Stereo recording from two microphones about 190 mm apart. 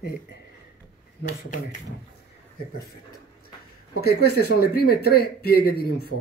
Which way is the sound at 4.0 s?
55° left (ahead or behind).